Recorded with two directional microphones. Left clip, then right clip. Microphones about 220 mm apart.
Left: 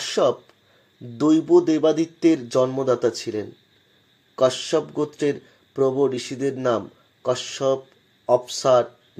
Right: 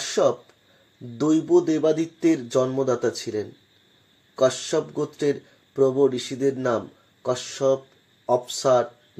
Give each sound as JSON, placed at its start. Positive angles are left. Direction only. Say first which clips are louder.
{"t": 0.2, "sound": "speech", "louder": "left 1 dB", "side_deg": 35}